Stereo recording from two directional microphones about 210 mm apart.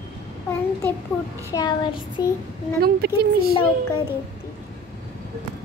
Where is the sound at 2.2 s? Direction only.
20° left (ahead or behind).